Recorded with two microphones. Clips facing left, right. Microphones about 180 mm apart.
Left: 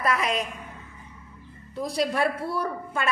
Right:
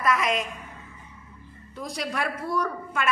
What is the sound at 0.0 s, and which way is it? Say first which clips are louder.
Speech: right 1 dB; 35° left (ahead or behind).